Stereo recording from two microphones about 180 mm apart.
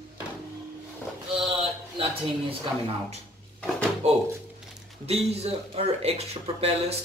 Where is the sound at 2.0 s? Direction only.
30° right (ahead or behind).